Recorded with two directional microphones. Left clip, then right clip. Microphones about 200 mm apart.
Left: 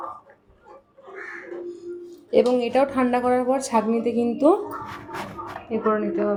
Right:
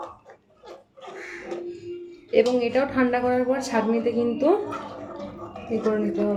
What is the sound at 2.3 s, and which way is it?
A woman's voice, 30° left (ahead or behind).